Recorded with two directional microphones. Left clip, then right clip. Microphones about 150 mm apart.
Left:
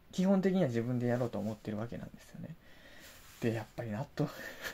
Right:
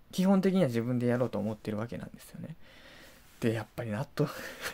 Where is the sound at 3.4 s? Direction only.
40° right (ahead or behind).